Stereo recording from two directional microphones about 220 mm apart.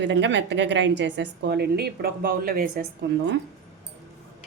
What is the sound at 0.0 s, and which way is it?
A woman's voice, 55° right (ahead or behind).